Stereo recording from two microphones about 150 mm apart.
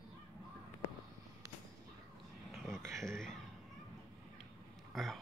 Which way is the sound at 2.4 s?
Centre (ahead or behind).